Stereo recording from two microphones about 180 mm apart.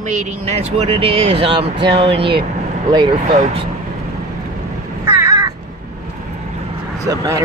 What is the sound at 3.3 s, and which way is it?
Speech, 40° right (ahead or behind).